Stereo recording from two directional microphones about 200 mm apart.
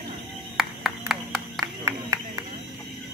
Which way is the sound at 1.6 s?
15° right (ahead or behind).